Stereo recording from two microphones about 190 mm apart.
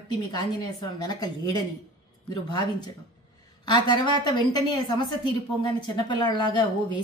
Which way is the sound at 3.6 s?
25° left (ahead or behind).